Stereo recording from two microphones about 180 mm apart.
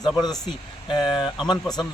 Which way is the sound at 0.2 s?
25° left (ahead or behind).